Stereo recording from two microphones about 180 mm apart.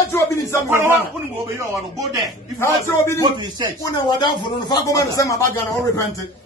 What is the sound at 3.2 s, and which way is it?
Speech, 20° right (ahead or behind).